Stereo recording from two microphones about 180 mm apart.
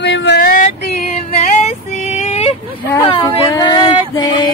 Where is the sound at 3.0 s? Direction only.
20° left (ahead or behind).